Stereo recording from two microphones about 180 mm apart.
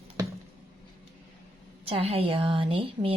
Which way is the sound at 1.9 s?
35° right (ahead or behind).